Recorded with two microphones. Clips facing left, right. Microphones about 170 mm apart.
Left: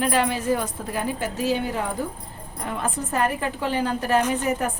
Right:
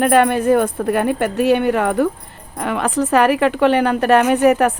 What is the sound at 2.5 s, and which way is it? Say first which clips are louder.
Speech: right 9 dB; 80° right.